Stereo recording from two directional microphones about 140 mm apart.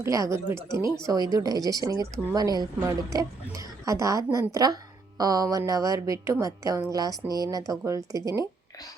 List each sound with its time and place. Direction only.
0.0 s a woman's voice: 20° right (ahead or behind)